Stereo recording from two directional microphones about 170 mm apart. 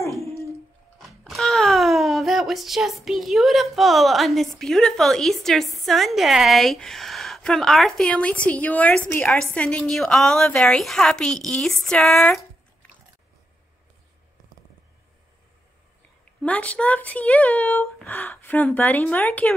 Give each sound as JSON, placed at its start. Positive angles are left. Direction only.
{"t": 0.9, "sound": "speech", "side_deg": 0}
{"t": 16.3, "sound": "speech", "side_deg": 10}